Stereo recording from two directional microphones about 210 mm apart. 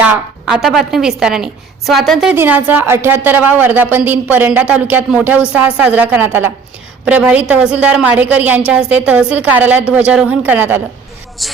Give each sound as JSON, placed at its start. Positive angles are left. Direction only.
{"t": 0.0, "sound": "a woman's voice", "side_deg": -5}